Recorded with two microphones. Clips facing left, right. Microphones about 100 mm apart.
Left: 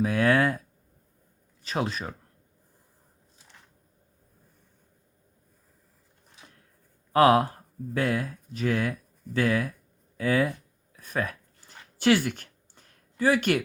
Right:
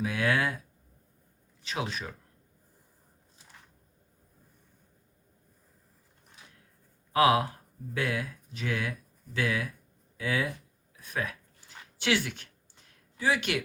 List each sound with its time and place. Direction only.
0.0 s speech: 45° left (ahead or behind)
1.6 s speech: 40° left (ahead or behind)
7.1 s speech: 40° left (ahead or behind)
11.9 s a sound: 45° left (ahead or behind)